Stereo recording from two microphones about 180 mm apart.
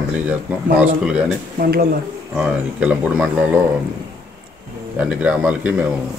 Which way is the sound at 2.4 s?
5° right (ahead or behind).